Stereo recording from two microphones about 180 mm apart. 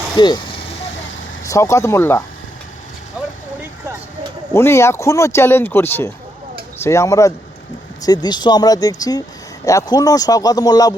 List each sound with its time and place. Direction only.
0.2 s speech: 25° left (ahead or behind)
1.5 s speech: 15° left (ahead or behind)
4.5 s speech: 15° left (ahead or behind)